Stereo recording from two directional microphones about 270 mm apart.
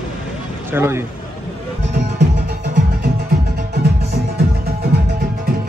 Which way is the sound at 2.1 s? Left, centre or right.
Right.